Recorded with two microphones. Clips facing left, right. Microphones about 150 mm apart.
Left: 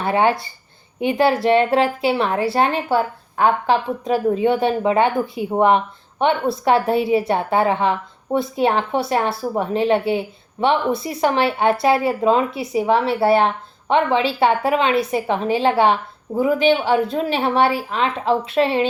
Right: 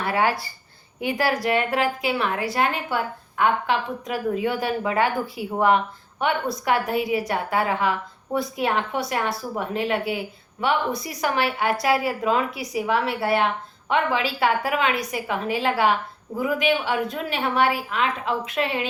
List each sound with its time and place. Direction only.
0.0 s a woman's voice: 25° left (ahead or behind)